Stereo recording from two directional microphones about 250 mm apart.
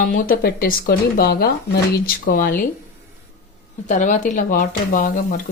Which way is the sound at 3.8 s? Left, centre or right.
Left.